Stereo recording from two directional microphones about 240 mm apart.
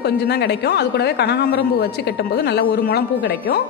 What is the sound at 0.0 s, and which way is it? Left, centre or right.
Speech, left.